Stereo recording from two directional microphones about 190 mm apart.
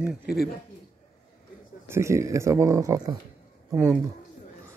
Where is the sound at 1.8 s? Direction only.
15° right (ahead or behind).